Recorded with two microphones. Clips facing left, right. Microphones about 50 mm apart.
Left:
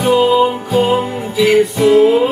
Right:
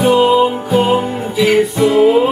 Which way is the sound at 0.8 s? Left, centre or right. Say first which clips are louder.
Left 1 dB; right.